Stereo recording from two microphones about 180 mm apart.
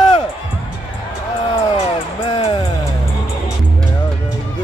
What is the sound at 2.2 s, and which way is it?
Speech, 35° left (ahead or behind).